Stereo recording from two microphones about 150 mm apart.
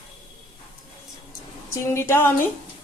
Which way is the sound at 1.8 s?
15° left (ahead or behind).